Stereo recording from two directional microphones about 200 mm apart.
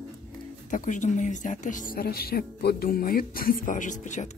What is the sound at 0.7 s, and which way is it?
Speech, 40° left (ahead or behind).